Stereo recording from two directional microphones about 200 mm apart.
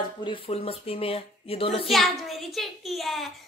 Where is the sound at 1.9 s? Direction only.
Centre (ahead or behind).